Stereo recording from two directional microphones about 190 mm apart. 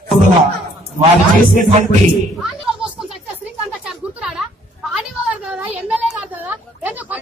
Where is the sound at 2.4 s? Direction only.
5° right (ahead or behind).